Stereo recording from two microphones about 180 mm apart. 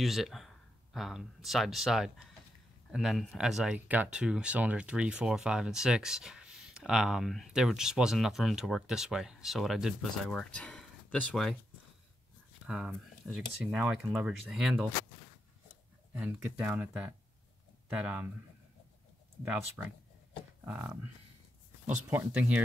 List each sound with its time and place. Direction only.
0.0 s speech: centre (ahead or behind)
12.6 s speech: 5° right (ahead or behind)
16.2 s speech: 5° right (ahead or behind)
19.4 s speech: 10° right (ahead or behind)